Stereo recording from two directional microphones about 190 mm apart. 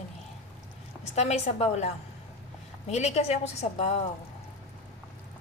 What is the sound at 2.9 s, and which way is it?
Speech, 35° left (ahead or behind).